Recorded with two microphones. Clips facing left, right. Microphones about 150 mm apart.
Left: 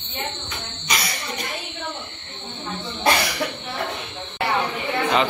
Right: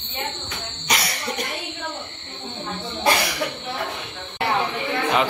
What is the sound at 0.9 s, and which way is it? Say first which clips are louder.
Cough: right 2 dB; 70° right (ahead or behind).